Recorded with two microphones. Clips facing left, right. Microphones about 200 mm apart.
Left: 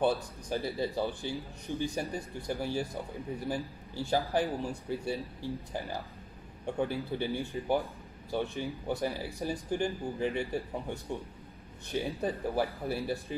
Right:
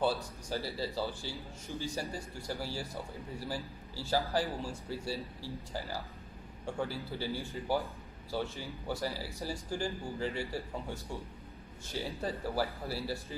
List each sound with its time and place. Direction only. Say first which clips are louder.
0.0 s speech: left 3 dB; 20° left (ahead or behind)
12.2 s speech: left 1 dB; 20° left (ahead or behind)